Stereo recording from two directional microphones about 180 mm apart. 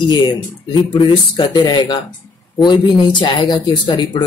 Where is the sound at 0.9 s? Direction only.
25° left (ahead or behind).